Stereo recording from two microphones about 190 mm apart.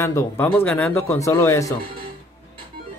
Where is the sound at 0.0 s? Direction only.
10° left (ahead or behind).